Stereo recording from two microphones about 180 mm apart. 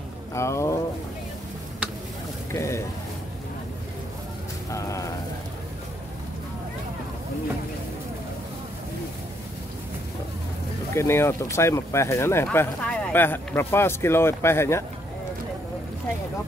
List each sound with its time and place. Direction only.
0.3 s speech: 15° left (ahead or behind)
2.5 s speech: 15° left (ahead or behind)
4.6 s a sound: 15° left (ahead or behind)
11.0 s speech: 15° left (ahead or behind)